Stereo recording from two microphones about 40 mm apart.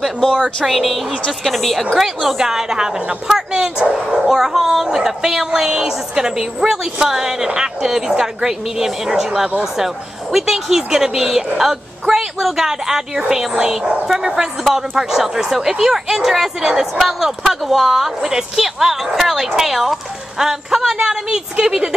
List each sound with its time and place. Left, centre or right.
0.7 s a woman's voice: centre